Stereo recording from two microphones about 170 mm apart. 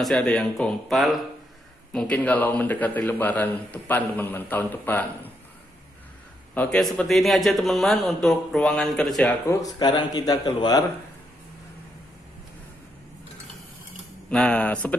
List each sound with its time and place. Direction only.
0.0 s a man's voice: 5° left (ahead or behind)
6.5 s a man's voice: 10° left (ahead or behind)
9.6 s a man's voice: 25° left (ahead or behind)
14.3 s a man's voice: 5° left (ahead or behind)